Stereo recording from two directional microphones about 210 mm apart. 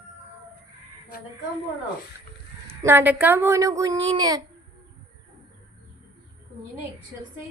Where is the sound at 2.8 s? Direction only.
10° right (ahead or behind).